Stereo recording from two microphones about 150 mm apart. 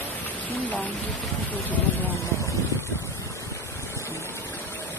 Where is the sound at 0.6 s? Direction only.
10° left (ahead or behind).